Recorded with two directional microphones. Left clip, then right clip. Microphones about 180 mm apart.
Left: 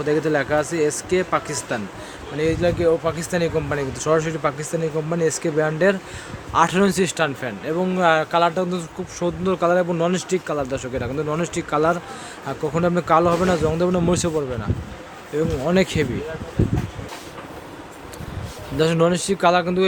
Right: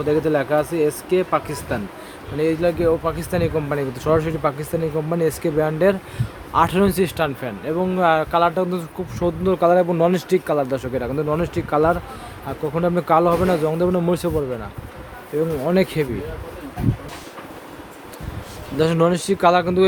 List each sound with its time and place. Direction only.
0.0 s speech: 5° right (ahead or behind)
15.6 s speech: 10° right (ahead or behind)
18.8 s speech: 15° right (ahead or behind)